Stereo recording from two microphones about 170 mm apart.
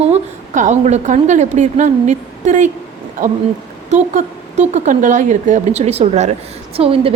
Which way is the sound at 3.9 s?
45° right (ahead or behind).